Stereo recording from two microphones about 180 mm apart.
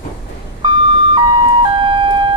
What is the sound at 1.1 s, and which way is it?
Siren, 30° right (ahead or behind).